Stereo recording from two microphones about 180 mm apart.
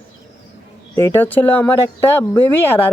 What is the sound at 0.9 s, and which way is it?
Speech, 10° left (ahead or behind).